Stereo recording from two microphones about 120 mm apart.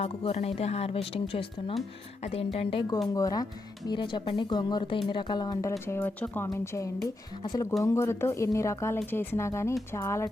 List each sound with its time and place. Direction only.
0.0 s speech: 55° left (ahead or behind)
3.2 s a woman's voice: 30° left (ahead or behind)
3.8 s speech: 40° left (ahead or behind)
5.8 s a woman's voice: 20° left (ahead or behind)